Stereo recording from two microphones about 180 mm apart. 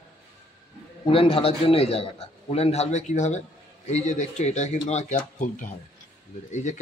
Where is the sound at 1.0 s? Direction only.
30° left (ahead or behind).